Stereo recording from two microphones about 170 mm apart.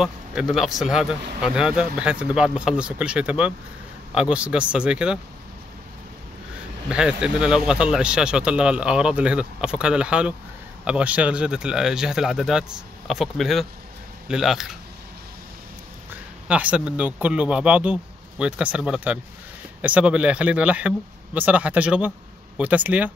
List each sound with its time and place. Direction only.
0.0 s speech: centre (ahead or behind)
6.9 s speech: 5° right (ahead or behind)
16.4 s speech: 10° right (ahead or behind)